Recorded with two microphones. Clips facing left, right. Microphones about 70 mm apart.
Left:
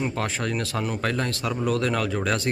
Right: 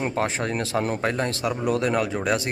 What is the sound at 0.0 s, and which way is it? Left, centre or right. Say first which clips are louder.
Speech: right 2 dB; right.